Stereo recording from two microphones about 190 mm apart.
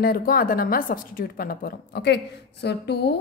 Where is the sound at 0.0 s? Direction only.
50° left (ahead or behind).